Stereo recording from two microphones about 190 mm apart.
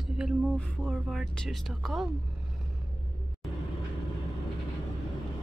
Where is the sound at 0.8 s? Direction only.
Centre (ahead or behind).